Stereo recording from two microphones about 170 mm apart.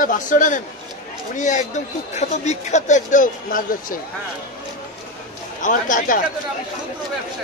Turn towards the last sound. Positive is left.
turn(degrees=50)  # may be behind; listen again after turning